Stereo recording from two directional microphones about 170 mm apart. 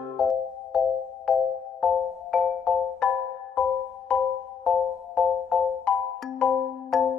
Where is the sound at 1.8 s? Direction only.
5° left (ahead or behind).